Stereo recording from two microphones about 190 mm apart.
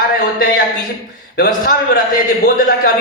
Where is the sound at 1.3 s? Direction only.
55° left (ahead or behind).